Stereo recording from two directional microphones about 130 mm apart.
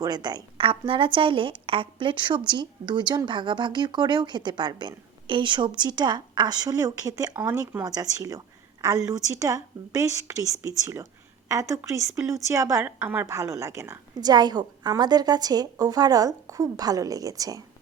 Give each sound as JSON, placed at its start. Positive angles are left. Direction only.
{"t": 0.0, "sound": "a woman's voice", "side_deg": -30}
{"t": 14.2, "sound": "a woman's voice", "side_deg": -30}